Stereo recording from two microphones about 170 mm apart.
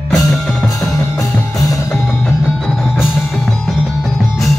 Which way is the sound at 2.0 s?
5° left (ahead or behind).